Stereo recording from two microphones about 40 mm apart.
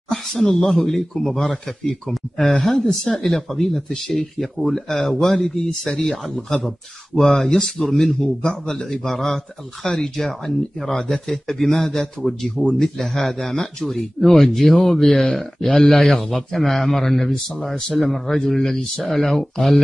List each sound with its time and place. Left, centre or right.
0.1 s a man's voice: centre
10.1 s a man's voice: centre
19.0 s speech: centre